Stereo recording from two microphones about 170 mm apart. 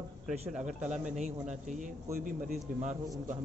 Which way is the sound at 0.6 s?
45° right (ahead or behind).